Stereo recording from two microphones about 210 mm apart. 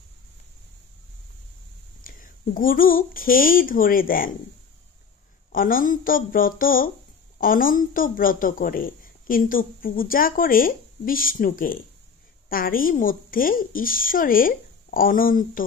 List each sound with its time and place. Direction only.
2.0 s speech: 40° left (ahead or behind)
5.5 s a woman's voice: 40° left (ahead or behind)